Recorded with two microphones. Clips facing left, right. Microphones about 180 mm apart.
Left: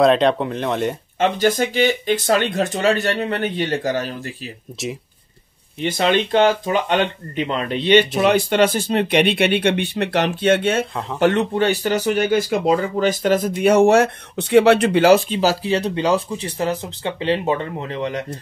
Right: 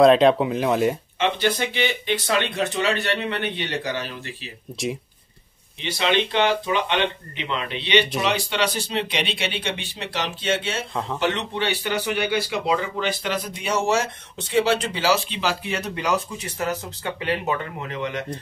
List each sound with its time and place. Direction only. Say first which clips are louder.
0.0 s speech: right 1 dB; centre (ahead or behind)
1.2 s speech: left 5 dB; 45° left (ahead or behind)
4.8 s speech: even; 5° left (ahead or behind)
5.8 s speech: left 4 dB; 45° left (ahead or behind)
13.6 s speech: left 10 dB; 55° left (ahead or behind); by 18.4 s 30° left (ahead or behind)